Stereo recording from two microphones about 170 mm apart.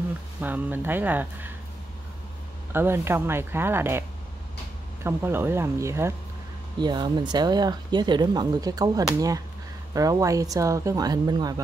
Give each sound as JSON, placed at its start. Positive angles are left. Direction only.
{"t": 0.4, "sound": "speech", "side_deg": -10}
{"t": 2.7, "sound": "speech", "side_deg": -15}
{"t": 5.0, "sound": "speech", "side_deg": -15}